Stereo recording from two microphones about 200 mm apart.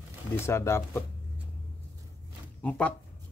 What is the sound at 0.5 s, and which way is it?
Speech, 15° left (ahead or behind).